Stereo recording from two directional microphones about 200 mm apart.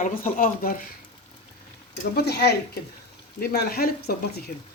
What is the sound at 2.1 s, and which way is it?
Speech, 55° left (ahead or behind).